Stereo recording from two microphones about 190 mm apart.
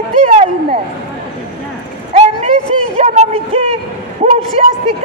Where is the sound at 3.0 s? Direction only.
35° right (ahead or behind).